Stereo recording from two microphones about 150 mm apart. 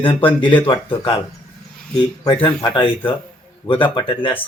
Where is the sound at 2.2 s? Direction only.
30° left (ahead or behind).